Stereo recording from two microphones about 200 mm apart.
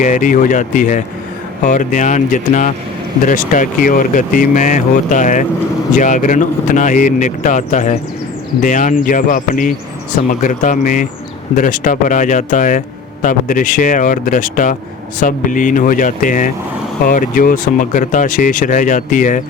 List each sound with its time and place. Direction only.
0.0 s speech: 40° left (ahead or behind)